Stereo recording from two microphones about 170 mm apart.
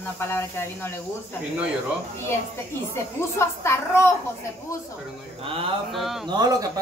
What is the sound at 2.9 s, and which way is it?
Speech, 15° left (ahead or behind).